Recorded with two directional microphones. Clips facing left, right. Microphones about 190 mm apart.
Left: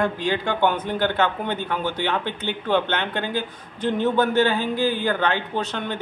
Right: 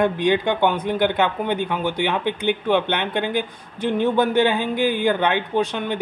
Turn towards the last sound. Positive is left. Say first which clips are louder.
# right 5 dB
turn(degrees=-10)  # may be behind; listen again after turning